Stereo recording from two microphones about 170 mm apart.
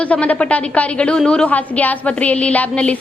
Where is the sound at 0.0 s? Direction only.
10° left (ahead or behind).